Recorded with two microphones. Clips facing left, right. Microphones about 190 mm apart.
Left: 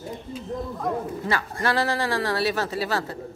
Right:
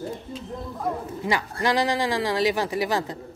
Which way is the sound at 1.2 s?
15° right (ahead or behind).